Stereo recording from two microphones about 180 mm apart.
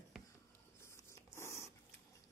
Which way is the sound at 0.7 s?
15° left (ahead or behind).